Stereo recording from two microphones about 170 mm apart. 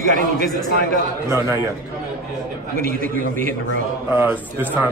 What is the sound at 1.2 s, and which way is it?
Speech, 15° right (ahead or behind).